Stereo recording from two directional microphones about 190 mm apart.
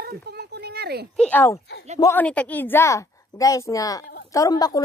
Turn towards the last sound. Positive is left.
turn(degrees=20)  # may be behind; listen again after turning